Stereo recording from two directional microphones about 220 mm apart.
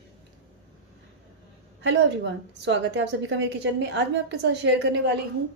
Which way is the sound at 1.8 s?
55° right (ahead or behind).